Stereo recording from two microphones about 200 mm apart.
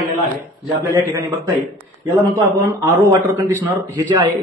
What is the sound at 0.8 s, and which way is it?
A man's voice, 15° right (ahead or behind).